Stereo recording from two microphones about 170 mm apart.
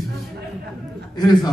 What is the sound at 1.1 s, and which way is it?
Speech, 25° left (ahead or behind).